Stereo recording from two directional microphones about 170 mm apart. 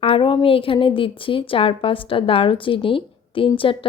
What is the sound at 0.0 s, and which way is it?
A woman's voice, 30° left (ahead or behind).